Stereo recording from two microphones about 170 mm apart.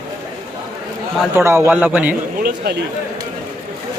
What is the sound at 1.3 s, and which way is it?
Speech, 15° right (ahead or behind).